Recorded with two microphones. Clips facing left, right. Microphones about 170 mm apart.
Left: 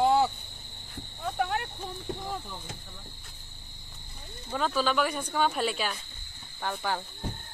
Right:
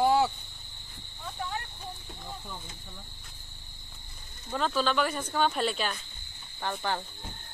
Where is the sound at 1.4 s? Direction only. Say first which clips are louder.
Left 6 dB; 70° left (ahead or behind).